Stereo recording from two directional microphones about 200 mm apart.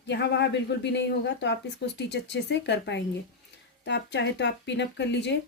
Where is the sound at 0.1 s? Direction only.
60° left (ahead or behind).